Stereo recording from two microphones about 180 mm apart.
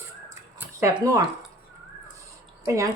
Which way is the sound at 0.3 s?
15° right (ahead or behind).